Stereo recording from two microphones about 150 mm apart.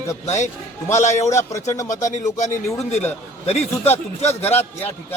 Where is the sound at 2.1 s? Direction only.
55° left (ahead or behind).